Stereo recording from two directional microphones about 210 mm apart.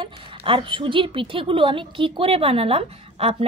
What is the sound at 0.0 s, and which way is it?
A woman's voice, 25° right (ahead or behind).